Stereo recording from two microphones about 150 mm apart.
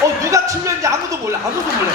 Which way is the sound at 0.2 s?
20° right (ahead or behind).